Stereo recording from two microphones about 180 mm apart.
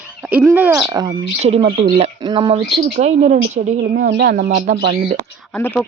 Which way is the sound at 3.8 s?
65° right (ahead or behind).